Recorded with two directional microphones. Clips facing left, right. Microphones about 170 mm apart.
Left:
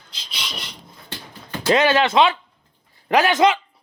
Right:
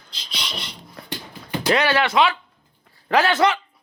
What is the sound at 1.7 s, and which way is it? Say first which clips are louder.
Speech: left 3 dB; 20° left (ahead or behind).